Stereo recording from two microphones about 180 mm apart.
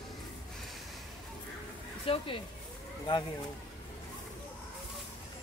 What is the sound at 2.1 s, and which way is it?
Speech, 30° left (ahead or behind).